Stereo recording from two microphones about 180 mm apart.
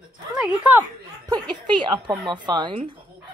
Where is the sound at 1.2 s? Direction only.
20° right (ahead or behind).